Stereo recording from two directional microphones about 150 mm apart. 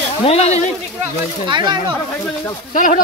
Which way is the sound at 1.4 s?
30° right (ahead or behind).